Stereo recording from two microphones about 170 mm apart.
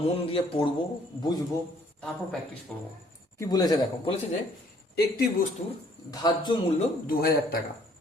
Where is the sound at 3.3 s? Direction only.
20° left (ahead or behind).